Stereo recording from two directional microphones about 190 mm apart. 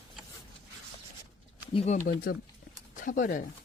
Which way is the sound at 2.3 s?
50° left (ahead or behind).